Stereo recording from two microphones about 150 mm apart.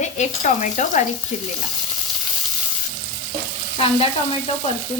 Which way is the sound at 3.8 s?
40° left (ahead or behind).